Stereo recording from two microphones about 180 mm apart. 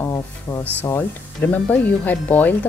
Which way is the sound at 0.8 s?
10° left (ahead or behind).